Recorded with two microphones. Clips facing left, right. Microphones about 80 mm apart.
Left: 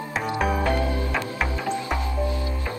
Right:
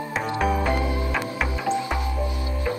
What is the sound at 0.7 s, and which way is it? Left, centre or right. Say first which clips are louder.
Music: even; right.